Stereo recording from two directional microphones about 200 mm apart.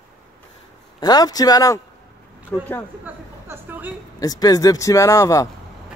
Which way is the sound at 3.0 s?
10° right (ahead or behind).